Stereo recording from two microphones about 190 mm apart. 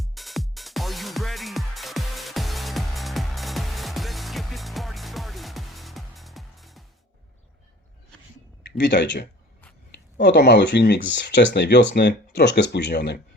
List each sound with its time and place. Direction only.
0.0 s music: centre (ahead or behind)
8.8 s speech: 65° left (ahead or behind)